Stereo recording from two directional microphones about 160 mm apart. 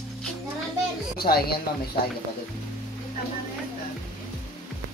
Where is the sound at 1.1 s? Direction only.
70° left (ahead or behind).